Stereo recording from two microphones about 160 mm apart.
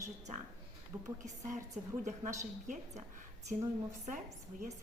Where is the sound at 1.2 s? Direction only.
50° right (ahead or behind).